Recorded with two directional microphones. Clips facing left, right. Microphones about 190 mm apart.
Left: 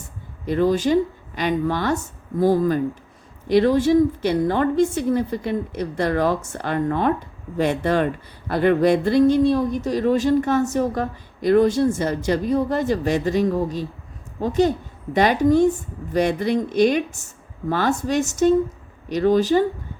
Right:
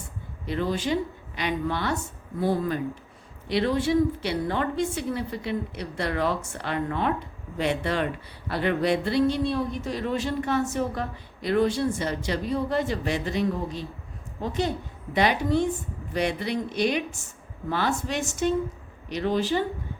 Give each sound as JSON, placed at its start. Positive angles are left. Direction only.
{"t": 0.4, "sound": "a woman's voice", "side_deg": 45}